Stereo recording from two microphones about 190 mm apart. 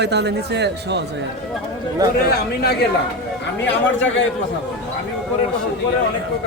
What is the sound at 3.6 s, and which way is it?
Speech, 75° left (ahead or behind).